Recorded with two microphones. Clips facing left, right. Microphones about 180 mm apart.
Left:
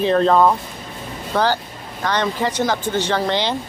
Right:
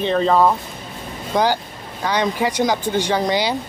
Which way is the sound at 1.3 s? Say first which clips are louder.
Right 1 dB; 15° right (ahead or behind).